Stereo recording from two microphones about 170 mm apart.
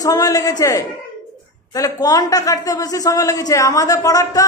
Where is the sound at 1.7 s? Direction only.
20° left (ahead or behind).